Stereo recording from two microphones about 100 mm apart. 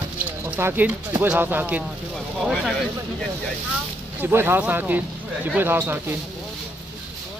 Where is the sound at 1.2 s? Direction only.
20° right (ahead or behind).